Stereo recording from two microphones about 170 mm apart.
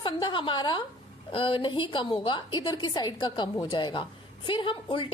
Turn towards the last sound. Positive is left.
turn(degrees=30)  # may be behind; listen again after turning